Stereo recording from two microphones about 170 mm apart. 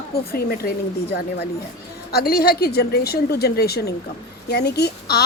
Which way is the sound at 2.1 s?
65° left (ahead or behind).